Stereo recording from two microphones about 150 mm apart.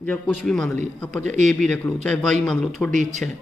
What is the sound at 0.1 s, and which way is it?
Speech, 5° left (ahead or behind).